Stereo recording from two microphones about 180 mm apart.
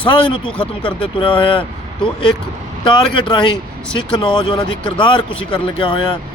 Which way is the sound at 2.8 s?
25° left (ahead or behind).